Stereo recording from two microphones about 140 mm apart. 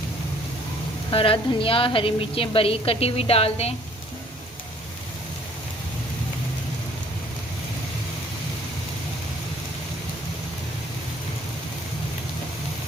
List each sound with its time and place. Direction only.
1.1 s a woman's voice: 40° left (ahead or behind)